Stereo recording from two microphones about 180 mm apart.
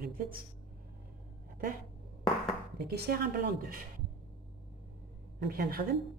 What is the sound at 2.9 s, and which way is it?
Speech, 60° right (ahead or behind).